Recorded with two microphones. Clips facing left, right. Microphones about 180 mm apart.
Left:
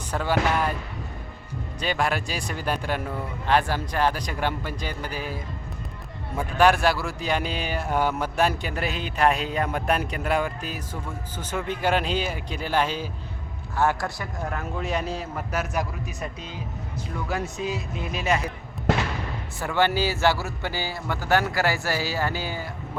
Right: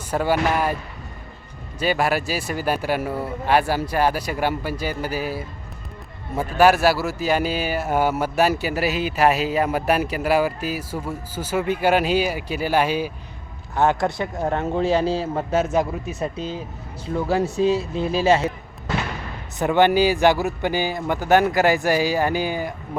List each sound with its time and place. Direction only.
0.1 s a man's voice: 10° right (ahead or behind)
1.8 s a man's voice: 5° right (ahead or behind)
13.7 s a man's voice: 20° right (ahead or behind)
19.5 s a man's voice: 20° right (ahead or behind)